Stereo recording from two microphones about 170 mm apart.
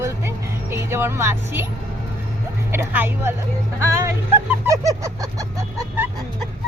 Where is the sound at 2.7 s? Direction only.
10° right (ahead or behind).